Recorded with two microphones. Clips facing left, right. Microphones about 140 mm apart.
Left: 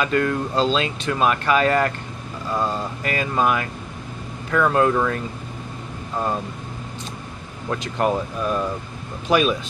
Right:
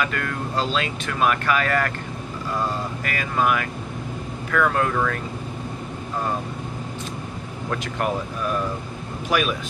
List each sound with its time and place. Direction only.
0.0 s speech: 25° left (ahead or behind)
3.0 s speech: 25° left (ahead or behind)
7.7 s speech: 25° left (ahead or behind)